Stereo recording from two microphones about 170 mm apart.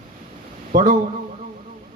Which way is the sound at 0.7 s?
50° right (ahead or behind).